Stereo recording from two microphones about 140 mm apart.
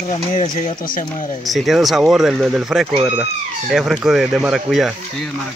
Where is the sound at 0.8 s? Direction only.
75° left (ahead or behind).